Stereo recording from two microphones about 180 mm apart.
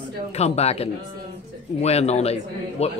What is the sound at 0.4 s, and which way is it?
Speech, 35° left (ahead or behind).